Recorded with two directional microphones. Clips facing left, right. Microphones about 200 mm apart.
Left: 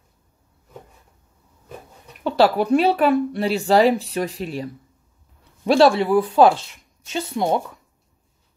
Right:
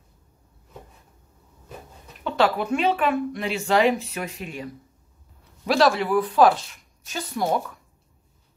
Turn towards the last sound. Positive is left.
turn(degrees=25)  # may be behind; listen again after turning